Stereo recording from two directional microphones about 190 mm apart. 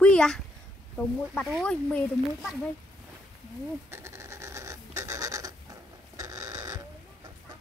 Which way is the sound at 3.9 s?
15° right (ahead or behind).